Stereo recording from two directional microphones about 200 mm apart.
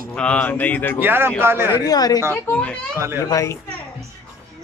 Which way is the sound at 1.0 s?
10° right (ahead or behind).